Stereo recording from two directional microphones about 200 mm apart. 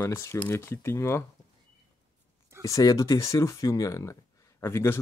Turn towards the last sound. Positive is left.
turn(degrees=10)  # may be behind; listen again after turning